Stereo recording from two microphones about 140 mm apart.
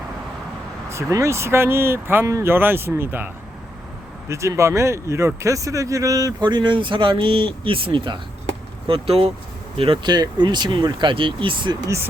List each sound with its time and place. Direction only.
0.9 s speech: 20° right (ahead or behind); by 11.8 s 35° right (ahead or behind)